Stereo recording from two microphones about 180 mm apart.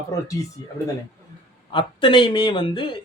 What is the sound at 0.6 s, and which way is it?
Speech, 20° left (ahead or behind).